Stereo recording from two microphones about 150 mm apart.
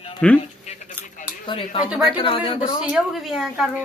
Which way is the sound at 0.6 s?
50° left (ahead or behind).